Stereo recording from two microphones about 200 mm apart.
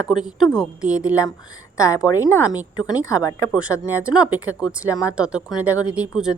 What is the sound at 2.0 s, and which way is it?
A woman's voice, 15° left (ahead or behind).